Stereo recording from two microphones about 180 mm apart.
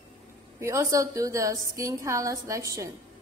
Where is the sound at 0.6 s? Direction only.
15° right (ahead or behind).